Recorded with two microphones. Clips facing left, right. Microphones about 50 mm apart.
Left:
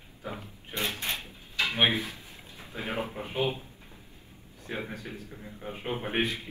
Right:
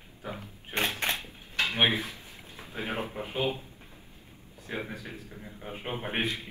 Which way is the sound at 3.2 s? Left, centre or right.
Right.